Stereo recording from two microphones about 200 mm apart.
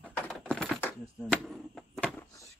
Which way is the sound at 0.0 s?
5° right (ahead or behind).